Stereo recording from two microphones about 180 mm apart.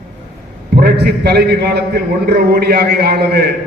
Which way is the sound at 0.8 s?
60° right (ahead or behind).